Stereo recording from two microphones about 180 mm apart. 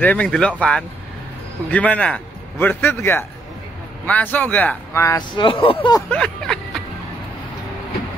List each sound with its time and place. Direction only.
0.0 s speech: 10° left (ahead or behind); by 6.0 s 25° left (ahead or behind)
6.0 s speech: 5° left (ahead or behind)